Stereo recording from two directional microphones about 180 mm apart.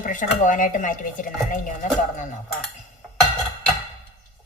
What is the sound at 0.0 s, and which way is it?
Speech, 45° left (ahead or behind).